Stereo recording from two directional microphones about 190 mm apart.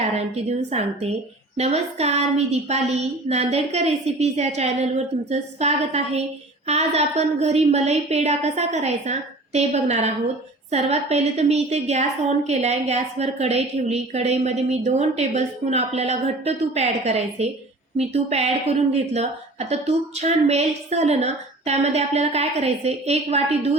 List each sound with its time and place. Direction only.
0.0 s a woman's voice: 35° right (ahead or behind)